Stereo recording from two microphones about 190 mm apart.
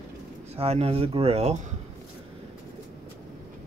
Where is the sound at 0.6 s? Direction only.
30° right (ahead or behind).